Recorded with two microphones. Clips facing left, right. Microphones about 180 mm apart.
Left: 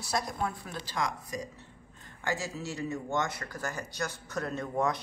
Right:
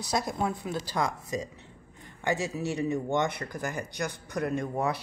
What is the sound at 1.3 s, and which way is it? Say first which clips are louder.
A woman's voice: right 5 dB; 25° right (ahead or behind).